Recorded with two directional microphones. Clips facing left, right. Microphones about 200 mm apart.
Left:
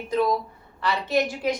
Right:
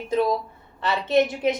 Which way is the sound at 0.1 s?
25° right (ahead or behind).